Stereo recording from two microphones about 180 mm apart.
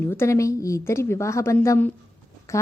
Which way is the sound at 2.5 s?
15° left (ahead or behind).